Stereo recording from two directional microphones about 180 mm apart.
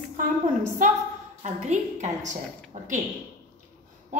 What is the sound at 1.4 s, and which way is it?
A woman's voice, 40° right (ahead or behind).